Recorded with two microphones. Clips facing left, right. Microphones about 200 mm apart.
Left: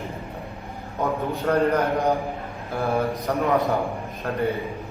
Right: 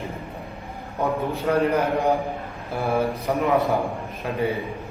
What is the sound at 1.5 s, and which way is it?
Speech, 10° right (ahead or behind).